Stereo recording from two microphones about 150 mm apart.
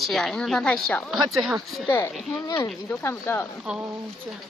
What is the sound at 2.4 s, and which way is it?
Speech, 25° left (ahead or behind).